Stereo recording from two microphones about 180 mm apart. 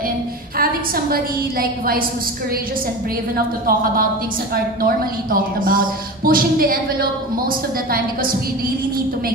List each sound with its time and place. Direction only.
0.6 s a woman's voice: 55° right (ahead or behind)
4.8 s a woman's voice: 50° right (ahead or behind)